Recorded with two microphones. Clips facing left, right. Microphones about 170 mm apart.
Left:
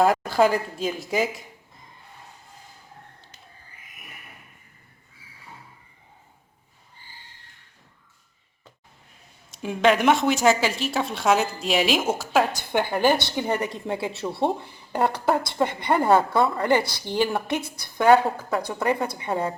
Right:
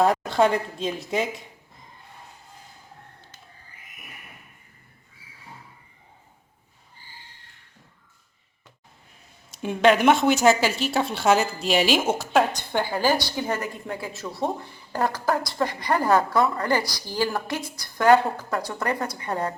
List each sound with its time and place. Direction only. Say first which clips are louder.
0.0 s speech: left 1 dB; centre (ahead or behind)
9.5 s speech: right 1 dB; centre (ahead or behind)
12.7 s speech: left 2 dB; 20° left (ahead or behind)
15.6 s a woman's voice: left 2 dB; 25° left (ahead or behind)
19.3 s speech: left 1 dB; 5° left (ahead or behind)